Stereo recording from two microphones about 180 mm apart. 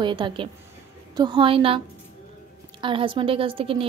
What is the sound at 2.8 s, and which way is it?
A woman's voice, 30° right (ahead or behind).